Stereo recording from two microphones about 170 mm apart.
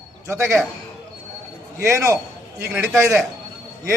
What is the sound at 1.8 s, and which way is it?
A man's voice, 15° right (ahead or behind).